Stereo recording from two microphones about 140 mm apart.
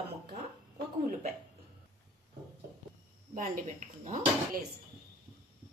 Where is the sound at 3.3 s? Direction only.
65° right (ahead or behind).